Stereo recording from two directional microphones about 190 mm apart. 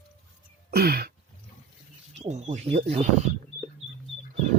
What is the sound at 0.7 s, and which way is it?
Throat clearing, 55° right (ahead or behind).